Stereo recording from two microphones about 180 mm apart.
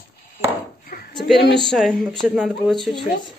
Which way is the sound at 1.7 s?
Centre (ahead or behind).